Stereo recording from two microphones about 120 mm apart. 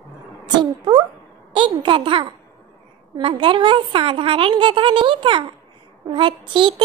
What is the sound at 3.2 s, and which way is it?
A woman's voice, 50° right (ahead or behind).